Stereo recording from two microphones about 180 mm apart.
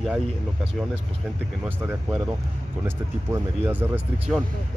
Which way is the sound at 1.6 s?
10° right (ahead or behind).